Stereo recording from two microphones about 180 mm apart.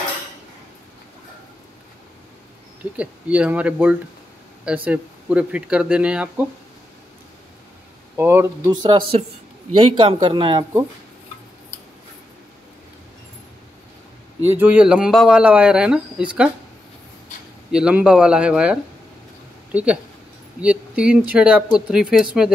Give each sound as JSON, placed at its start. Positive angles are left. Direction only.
{"t": 3.0, "sound": "speech", "side_deg": -5}
{"t": 8.2, "sound": "speech", "side_deg": -15}
{"t": 8.8, "sound": "speech", "side_deg": -25}
{"t": 14.6, "sound": "speech", "side_deg": -5}
{"t": 17.6, "sound": "speech", "side_deg": -5}